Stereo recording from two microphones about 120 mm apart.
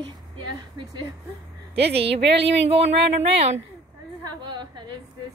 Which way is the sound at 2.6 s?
55° right (ahead or behind).